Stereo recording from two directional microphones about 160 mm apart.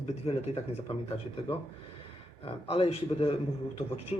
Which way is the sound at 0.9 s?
40° left (ahead or behind).